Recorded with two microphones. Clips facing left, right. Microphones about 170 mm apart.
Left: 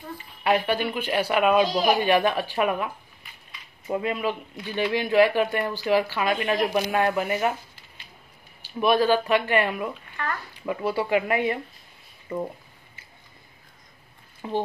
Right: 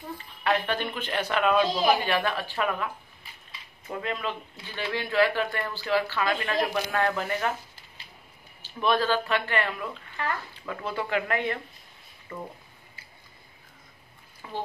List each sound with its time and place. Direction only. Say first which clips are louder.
0.4 s speech: left 4 dB; 10° left (ahead or behind)
8.6 s speech: left 5 dB; 10° left (ahead or behind)
14.4 s speech: left 9 dB; 25° left (ahead or behind)